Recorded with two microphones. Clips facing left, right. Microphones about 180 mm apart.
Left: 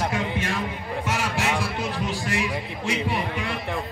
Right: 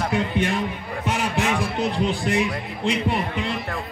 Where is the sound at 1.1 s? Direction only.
15° right (ahead or behind).